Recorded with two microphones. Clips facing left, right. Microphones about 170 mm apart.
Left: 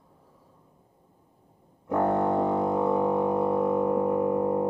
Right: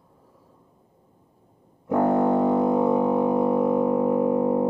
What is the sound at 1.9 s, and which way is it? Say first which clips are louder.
Music: right 4 dB; 10° right (ahead or behind).